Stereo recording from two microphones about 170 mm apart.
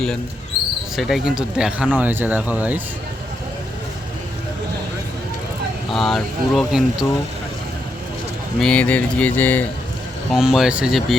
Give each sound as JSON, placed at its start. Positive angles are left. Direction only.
{"t": 0.9, "sound": "speech", "side_deg": 0}
{"t": 5.9, "sound": "speech", "side_deg": 0}
{"t": 8.5, "sound": "speech", "side_deg": 5}
{"t": 10.3, "sound": "speech", "side_deg": 0}